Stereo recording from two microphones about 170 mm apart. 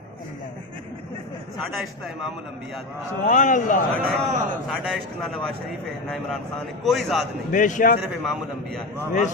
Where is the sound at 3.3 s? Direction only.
50° left (ahead or behind).